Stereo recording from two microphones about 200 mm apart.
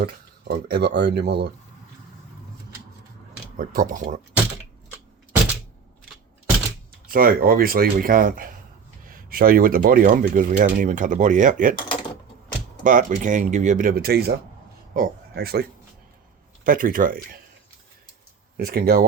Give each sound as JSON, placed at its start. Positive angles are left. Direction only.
{"t": 0.0, "sound": "speech", "side_deg": -55}
{"t": 3.6, "sound": "speech", "side_deg": -45}
{"t": 7.1, "sound": "speech", "side_deg": -45}
{"t": 12.8, "sound": "speech", "side_deg": -40}
{"t": 16.6, "sound": "speech", "side_deg": -45}
{"t": 18.5, "sound": "speech", "side_deg": -50}